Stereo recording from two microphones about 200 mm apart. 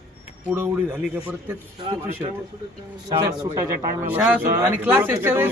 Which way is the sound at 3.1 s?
20° right (ahead or behind).